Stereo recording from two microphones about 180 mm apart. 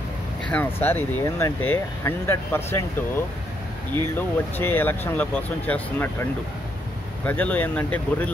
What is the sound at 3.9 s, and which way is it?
Speech, 10° left (ahead or behind).